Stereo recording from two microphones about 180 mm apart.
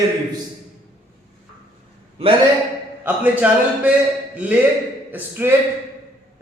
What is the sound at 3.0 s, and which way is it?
Speech, 10° right (ahead or behind).